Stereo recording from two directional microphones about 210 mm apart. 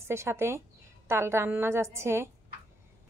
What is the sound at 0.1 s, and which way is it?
A woman's voice, 10° right (ahead or behind).